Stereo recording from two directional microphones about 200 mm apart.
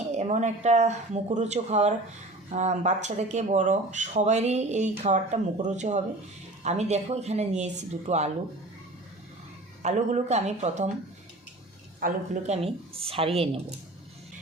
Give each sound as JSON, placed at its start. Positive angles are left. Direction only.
{"t": 0.1, "sound": "speech", "side_deg": -35}
{"t": 9.8, "sound": "speech", "side_deg": -35}
{"t": 11.9, "sound": "a woman's voice", "side_deg": -40}